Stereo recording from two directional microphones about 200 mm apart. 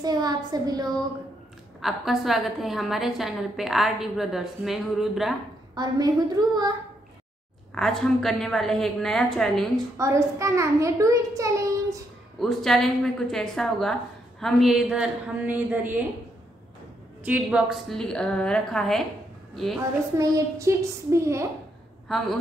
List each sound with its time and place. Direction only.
0.0 s a woman's voice: 20° right (ahead or behind)
1.8 s a woman's voice: centre (ahead or behind)
5.8 s a woman's voice: 20° right (ahead or behind)
7.7 s a woman's voice: centre (ahead or behind)
9.9 s a child's voice: 15° right (ahead or behind)
12.4 s a woman's voice: centre (ahead or behind)
17.2 s a woman's voice: 5° right (ahead or behind)
20.2 s a child's voice: 15° right (ahead or behind)
22.0 s a woman's voice: centre (ahead or behind)